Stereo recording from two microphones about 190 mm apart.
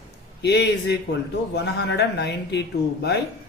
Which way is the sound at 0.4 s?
60° left (ahead or behind).